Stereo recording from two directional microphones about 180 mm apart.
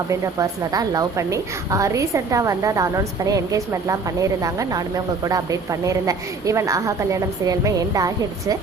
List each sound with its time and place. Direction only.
0.1 s a woman's voice: 20° right (ahead or behind)